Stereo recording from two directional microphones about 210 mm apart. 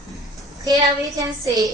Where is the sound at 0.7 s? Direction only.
15° right (ahead or behind).